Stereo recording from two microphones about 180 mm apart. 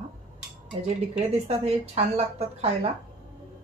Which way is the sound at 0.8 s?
35° right (ahead or behind).